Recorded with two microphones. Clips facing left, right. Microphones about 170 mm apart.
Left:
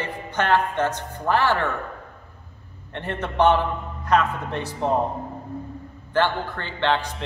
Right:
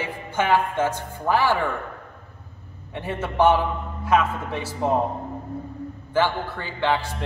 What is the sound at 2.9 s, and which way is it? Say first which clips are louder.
A woman's voice: even; 5° right (ahead or behind).